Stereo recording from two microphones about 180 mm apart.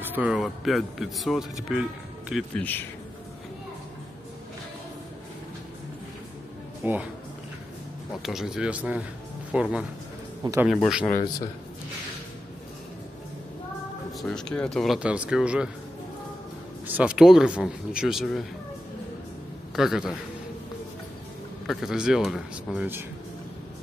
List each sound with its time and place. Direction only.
0.0 s speech: 10° right (ahead or behind)
2.5 s speech: 10° left (ahead or behind)
6.8 s speech: 10° right (ahead or behind)
8.2 s speech: centre (ahead or behind)
10.4 s a man's voice: 15° right (ahead or behind)
10.7 s speech: centre (ahead or behind)
14.2 s speech: 5° left (ahead or behind)
16.8 s speech: 10° right (ahead or behind)
19.7 s a man's voice: centre (ahead or behind)
21.6 s speech: 5° right (ahead or behind)